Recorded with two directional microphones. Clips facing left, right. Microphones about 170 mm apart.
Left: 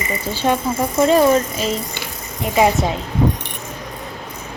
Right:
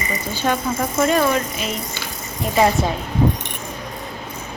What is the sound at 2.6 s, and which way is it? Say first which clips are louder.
Speech: left 1 dB; 15° left (ahead or behind).